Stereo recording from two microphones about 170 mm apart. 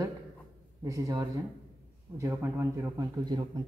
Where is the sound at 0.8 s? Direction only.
20° right (ahead or behind).